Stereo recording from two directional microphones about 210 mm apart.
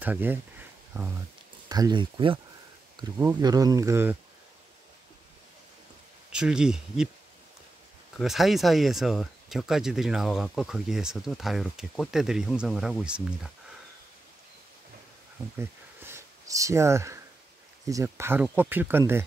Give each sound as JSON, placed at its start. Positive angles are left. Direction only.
{"t": 0.0, "sound": "speech", "side_deg": -10}
{"t": 1.7, "sound": "speech", "side_deg": -20}
{"t": 6.3, "sound": "speech", "side_deg": -5}
{"t": 8.2, "sound": "speech", "side_deg": 0}
{"t": 16.0, "sound": "a sound", "side_deg": -15}
{"t": 17.8, "sound": "speech", "side_deg": -15}